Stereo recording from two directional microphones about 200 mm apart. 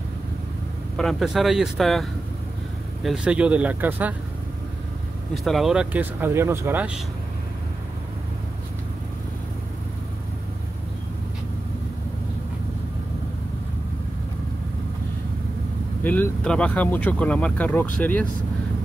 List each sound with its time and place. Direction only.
0.9 s speech: centre (ahead or behind)
5.3 s speech: centre (ahead or behind)
16.0 s speech: 10° left (ahead or behind)